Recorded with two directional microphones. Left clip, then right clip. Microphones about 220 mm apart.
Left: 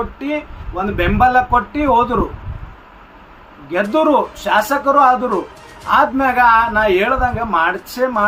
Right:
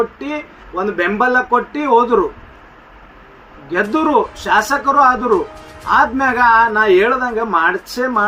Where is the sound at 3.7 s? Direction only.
10° left (ahead or behind).